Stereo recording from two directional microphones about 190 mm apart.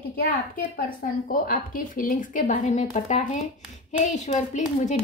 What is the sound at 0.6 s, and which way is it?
A woman's voice, 45° left (ahead or behind).